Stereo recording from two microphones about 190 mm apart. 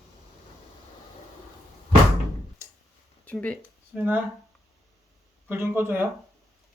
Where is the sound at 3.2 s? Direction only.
5° left (ahead or behind).